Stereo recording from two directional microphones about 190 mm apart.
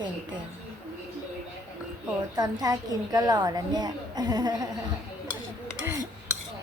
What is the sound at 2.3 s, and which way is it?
A woman's voice, 20° right (ahead or behind).